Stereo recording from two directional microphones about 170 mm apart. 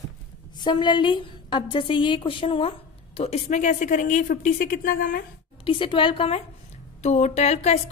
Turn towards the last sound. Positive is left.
turn(degrees=40)  # may be behind; listen again after turning